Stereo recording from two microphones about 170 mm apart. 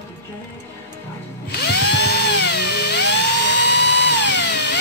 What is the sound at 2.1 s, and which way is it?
Music, 75° left (ahead or behind).